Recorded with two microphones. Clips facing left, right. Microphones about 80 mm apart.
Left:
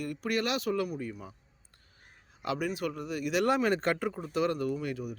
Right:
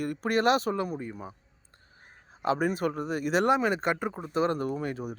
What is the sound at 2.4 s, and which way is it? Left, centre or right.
Speech, right.